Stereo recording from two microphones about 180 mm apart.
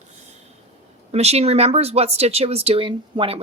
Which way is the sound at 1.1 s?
35° right (ahead or behind).